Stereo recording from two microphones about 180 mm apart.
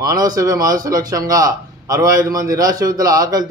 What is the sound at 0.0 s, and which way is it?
A man's voice, 20° right (ahead or behind).